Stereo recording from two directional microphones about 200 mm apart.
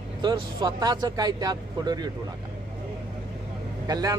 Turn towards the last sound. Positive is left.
turn(degrees=-20)  # may be behind; listen again after turning